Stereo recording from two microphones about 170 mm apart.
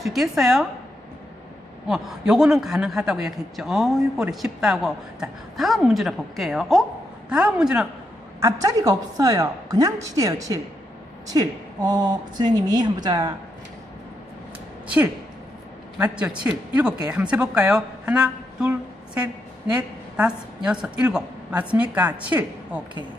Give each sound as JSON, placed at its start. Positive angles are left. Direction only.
{"t": 0.0, "sound": "a man's voice", "side_deg": 0}
{"t": 1.9, "sound": "a man's voice", "side_deg": -5}
{"t": 8.4, "sound": "a woman's voice", "side_deg": -20}
{"t": 14.8, "sound": "a man's voice", "side_deg": -10}